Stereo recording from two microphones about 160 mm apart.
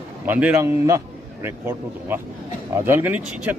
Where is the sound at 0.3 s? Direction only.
10° right (ahead or behind).